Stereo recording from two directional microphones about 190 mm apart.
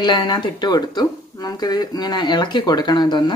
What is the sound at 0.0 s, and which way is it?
Speech, 25° left (ahead or behind).